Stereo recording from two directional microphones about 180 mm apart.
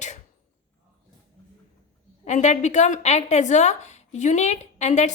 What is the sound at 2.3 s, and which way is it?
A woman's voice, 40° left (ahead or behind).